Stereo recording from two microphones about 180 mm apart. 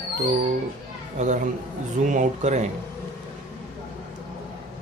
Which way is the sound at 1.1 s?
40° right (ahead or behind).